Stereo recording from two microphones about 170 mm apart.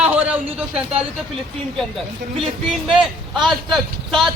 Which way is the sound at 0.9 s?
35° right (ahead or behind).